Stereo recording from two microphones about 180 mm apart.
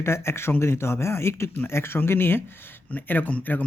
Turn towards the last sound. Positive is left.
turn(degrees=10)  # may be behind; listen again after turning